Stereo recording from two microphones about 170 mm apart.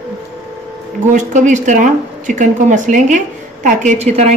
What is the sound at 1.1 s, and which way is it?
Speech, 45° right (ahead or behind).